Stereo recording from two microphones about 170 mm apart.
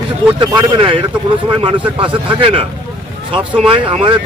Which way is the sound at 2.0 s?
30° right (ahead or behind).